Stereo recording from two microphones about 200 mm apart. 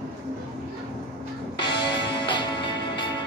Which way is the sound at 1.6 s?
20° left (ahead or behind).